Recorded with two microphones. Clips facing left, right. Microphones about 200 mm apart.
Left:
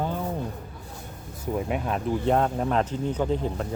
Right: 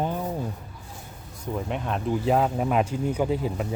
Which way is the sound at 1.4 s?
5° left (ahead or behind).